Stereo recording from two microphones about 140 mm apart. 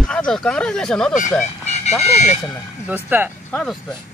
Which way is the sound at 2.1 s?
55° left (ahead or behind).